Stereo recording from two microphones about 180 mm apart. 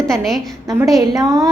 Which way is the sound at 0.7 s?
20° right (ahead or behind).